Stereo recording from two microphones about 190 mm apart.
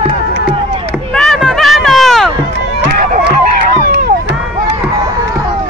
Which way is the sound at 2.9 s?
50° right (ahead or behind).